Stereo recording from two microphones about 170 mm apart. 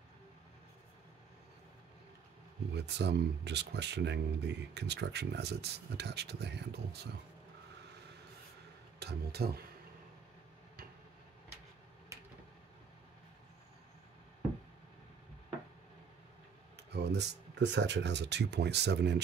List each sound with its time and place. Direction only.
2.7 s speech: 85° right
9.0 s speech: 65° right (ahead or behind)
16.7 s speech: 80° right